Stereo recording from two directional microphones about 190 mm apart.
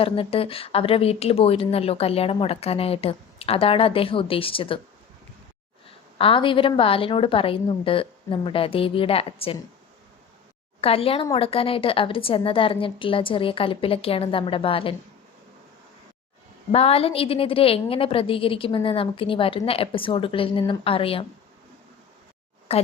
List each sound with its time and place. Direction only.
0.0 s a woman's voice: 30° left (ahead or behind)
6.1 s a woman's voice: 30° left (ahead or behind)
10.8 s a woman's voice: 30° left (ahead or behind)
16.7 s a woman's voice: 30° left (ahead or behind)
22.7 s speech: 30° left (ahead or behind)